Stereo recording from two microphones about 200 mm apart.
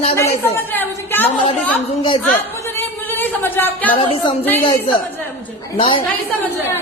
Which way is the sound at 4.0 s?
25° left (ahead or behind).